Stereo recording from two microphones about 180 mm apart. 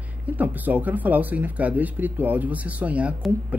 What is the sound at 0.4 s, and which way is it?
Speech, 10° right (ahead or behind).